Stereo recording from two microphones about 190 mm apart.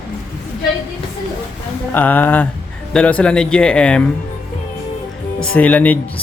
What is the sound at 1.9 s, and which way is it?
Speech, 10° left (ahead or behind).